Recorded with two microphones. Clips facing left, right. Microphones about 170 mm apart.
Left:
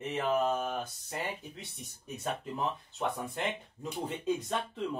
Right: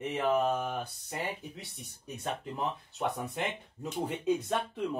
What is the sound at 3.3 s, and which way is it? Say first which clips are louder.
Speech: even; 5° right (ahead or behind).